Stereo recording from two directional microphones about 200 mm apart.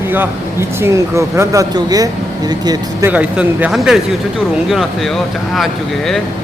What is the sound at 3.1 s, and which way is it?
Speech, 5° right (ahead or behind).